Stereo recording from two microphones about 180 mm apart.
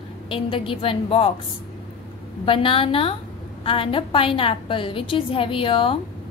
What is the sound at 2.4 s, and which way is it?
A woman's voice, 30° left (ahead or behind).